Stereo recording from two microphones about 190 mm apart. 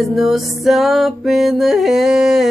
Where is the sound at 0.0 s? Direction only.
Centre (ahead or behind).